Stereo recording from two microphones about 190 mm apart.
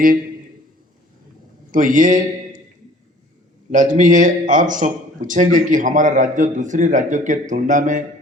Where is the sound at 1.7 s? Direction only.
45° right (ahead or behind).